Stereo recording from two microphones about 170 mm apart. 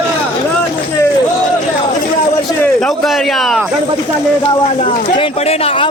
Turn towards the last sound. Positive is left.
turn(degrees=35)  # may be behind; listen again after turning